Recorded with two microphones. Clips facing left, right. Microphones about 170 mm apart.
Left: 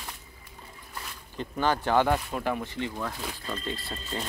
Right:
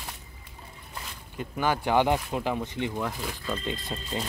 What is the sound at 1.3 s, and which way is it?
Speech, 10° right (ahead or behind).